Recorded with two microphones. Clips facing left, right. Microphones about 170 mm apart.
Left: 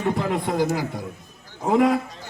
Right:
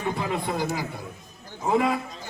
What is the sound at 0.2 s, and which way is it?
Speech, 55° left (ahead or behind).